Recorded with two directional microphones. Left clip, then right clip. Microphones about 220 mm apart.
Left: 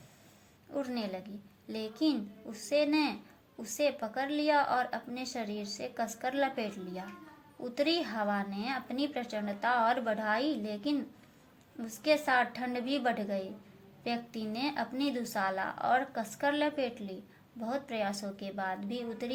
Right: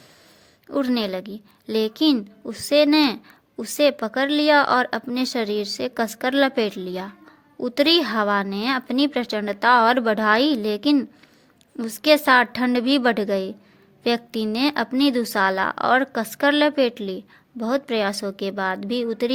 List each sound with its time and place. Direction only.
0.7 s a woman's voice: 50° right (ahead or behind)